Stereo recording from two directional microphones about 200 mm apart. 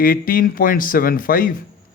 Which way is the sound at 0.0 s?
45° left (ahead or behind).